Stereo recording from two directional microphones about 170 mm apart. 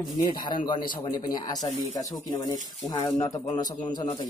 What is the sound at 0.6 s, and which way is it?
A man's voice, 25° left (ahead or behind).